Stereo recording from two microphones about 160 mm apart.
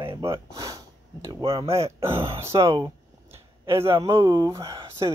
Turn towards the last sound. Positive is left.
turn(degrees=-20)  # may be behind; listen again after turning